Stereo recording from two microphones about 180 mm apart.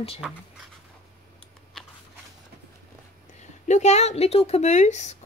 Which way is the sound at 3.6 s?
40° left (ahead or behind).